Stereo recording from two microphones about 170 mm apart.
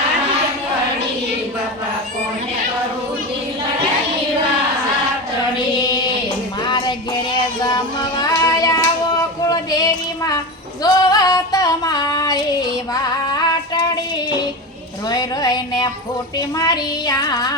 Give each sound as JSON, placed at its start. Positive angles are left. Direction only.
{"t": 5.8, "sound": "child singing", "side_deg": 25}
{"t": 9.4, "sound": "a sound", "side_deg": 20}
{"t": 16.6, "sound": "child singing", "side_deg": 25}